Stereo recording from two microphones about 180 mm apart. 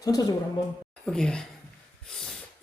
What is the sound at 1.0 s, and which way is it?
Speech, 5° left (ahead or behind).